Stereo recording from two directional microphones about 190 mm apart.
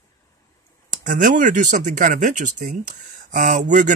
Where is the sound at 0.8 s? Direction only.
45° right (ahead or behind).